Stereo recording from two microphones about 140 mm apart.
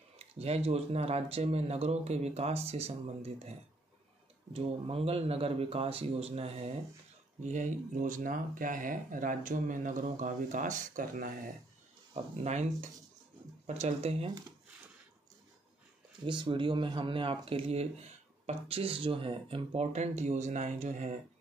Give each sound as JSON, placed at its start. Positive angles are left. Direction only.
{"t": 0.2, "sound": "speech", "side_deg": -45}
{"t": 7.4, "sound": "speech", "side_deg": -60}
{"t": 12.1, "sound": "speech", "side_deg": -50}
{"t": 13.7, "sound": "speech", "side_deg": -55}
{"t": 16.3, "sound": "speech", "side_deg": -35}